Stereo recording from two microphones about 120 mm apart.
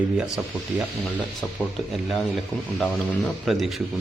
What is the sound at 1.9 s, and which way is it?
Speech, centre (ahead or behind).